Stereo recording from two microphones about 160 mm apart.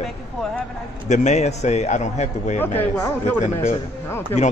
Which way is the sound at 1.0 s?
45° left (ahead or behind).